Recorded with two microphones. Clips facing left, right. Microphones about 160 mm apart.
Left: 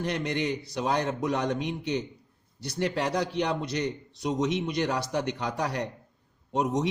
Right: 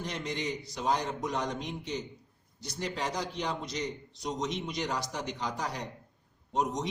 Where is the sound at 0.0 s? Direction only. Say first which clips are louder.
Left 6 dB; 65° left (ahead or behind).